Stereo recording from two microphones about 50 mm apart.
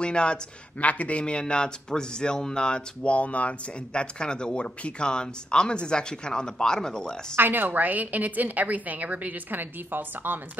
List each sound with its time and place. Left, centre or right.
0.0 s speech: centre
7.3 s a woman's voice: right